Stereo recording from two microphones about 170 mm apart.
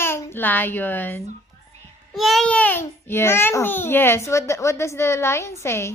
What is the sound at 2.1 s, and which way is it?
A child's voice, centre (ahead or behind).